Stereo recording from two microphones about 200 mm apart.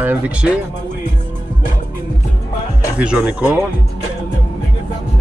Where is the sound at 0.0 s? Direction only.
10° right (ahead or behind).